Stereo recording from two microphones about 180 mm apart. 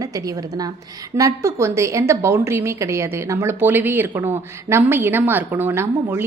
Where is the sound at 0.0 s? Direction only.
20° right (ahead or behind).